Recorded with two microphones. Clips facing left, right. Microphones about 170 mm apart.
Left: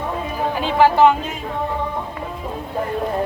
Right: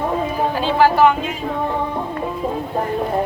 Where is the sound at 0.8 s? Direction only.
20° left (ahead or behind).